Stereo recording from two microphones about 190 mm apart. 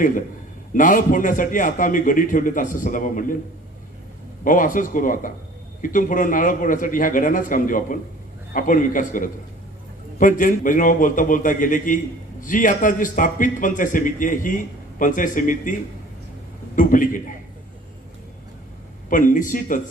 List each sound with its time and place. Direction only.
0.7 s a man's voice: 45° left (ahead or behind)
4.4 s a man's voice: 45° left (ahead or behind)
16.7 s a man's voice: 45° left (ahead or behind)
19.1 s a man's voice: 45° left (ahead or behind)